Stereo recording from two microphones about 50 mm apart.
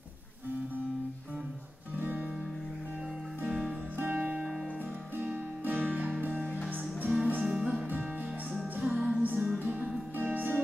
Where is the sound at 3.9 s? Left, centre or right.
Right.